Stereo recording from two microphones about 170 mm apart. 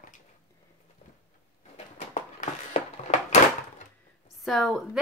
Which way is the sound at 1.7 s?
45° left (ahead or behind).